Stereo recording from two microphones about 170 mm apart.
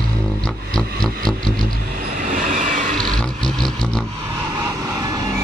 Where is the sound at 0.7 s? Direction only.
5° left (ahead or behind).